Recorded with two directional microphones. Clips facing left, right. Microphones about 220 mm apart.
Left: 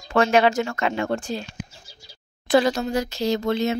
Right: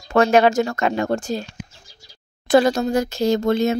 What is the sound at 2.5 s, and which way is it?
Speech, 45° right (ahead or behind).